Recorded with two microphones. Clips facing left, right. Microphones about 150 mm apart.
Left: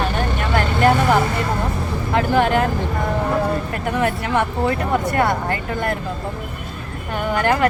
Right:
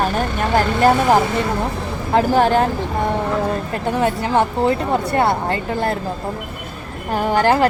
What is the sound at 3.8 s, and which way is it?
Speech, 30° right (ahead or behind).